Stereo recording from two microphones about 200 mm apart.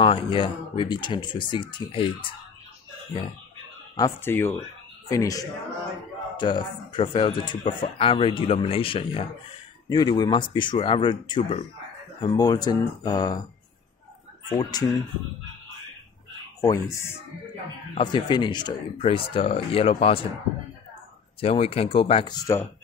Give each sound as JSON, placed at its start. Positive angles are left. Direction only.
{"t": 0.0, "sound": "speech", "side_deg": 25}
{"t": 3.9, "sound": "speech", "side_deg": 15}
{"t": 14.5, "sound": "speech", "side_deg": 20}
{"t": 16.6, "sound": "speech", "side_deg": 15}
{"t": 21.4, "sound": "speech", "side_deg": 30}